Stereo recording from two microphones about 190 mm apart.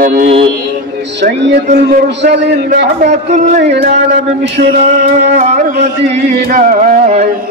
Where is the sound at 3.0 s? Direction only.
40° right (ahead or behind).